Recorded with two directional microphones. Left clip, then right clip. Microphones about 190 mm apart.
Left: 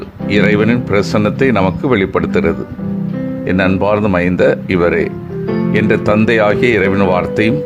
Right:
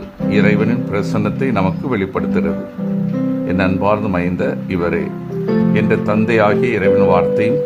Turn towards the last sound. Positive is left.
turn(degrees=25)  # may be behind; listen again after turning